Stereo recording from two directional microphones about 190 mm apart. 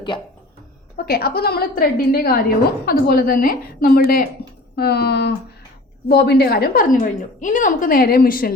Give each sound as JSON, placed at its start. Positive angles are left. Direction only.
{"t": 1.0, "sound": "a woman's voice", "side_deg": 55}